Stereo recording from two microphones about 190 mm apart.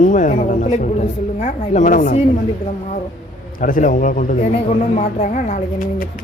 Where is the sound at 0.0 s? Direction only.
40° left (ahead or behind).